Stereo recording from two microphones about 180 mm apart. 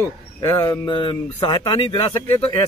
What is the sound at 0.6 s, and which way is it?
Speech, 25° left (ahead or behind).